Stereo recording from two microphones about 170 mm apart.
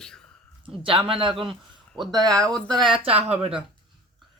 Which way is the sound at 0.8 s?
30° right (ahead or behind).